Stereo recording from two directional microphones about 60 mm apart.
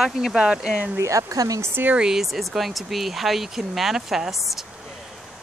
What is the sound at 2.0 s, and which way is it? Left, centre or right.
Speech, centre.